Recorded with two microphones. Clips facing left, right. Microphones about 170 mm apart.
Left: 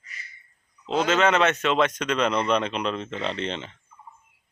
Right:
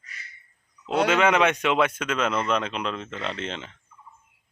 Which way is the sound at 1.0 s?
10° right (ahead or behind).